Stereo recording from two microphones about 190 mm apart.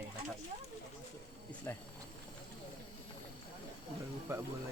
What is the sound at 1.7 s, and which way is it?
Speech, 15° left (ahead or behind).